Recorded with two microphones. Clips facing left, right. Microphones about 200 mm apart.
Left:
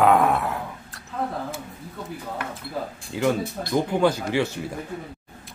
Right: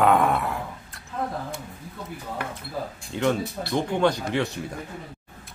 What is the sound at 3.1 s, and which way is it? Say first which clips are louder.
Speech: left 1 dB; 5° left (ahead or behind).